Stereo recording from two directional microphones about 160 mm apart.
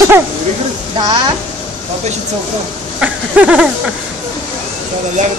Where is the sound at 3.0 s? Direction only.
10° right (ahead or behind).